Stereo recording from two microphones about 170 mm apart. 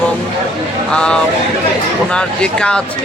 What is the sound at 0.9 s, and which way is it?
Speech, 5° left (ahead or behind).